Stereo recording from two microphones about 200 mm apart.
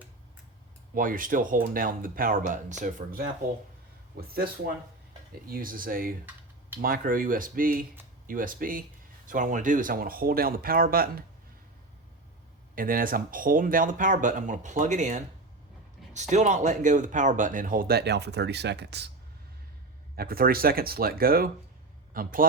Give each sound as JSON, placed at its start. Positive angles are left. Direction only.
{"t": 0.9, "sound": "speech", "side_deg": -45}
{"t": 5.5, "sound": "speech", "side_deg": -45}
{"t": 12.7, "sound": "speech", "side_deg": -45}
{"t": 16.3, "sound": "speech", "side_deg": -35}
{"t": 20.1, "sound": "a man's voice", "side_deg": -50}